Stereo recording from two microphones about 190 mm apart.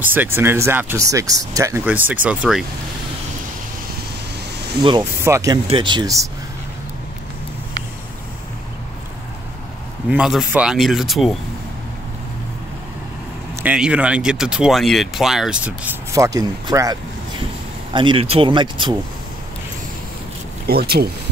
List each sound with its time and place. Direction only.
0.0 s speech: 10° right (ahead or behind)
5.2 s speech: 15° right (ahead or behind)
10.0 s speech: 5° right (ahead or behind)
13.6 s speech: 5° right (ahead or behind); by 18.9 s 25° right (ahead or behind)
20.6 s speech: 55° right (ahead or behind)